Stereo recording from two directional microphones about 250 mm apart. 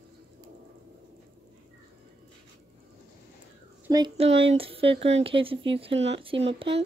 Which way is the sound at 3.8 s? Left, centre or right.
Centre.